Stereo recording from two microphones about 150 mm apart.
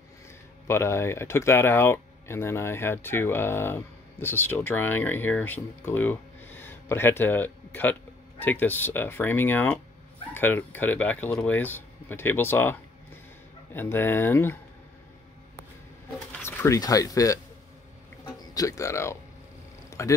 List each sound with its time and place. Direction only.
0.7 s speech: 15° left (ahead or behind)
13.7 s speech: 15° left (ahead or behind)
16.3 s speech: 15° left (ahead or behind)
18.2 s music: 25° left (ahead or behind)
19.9 s a sound: 20° left (ahead or behind)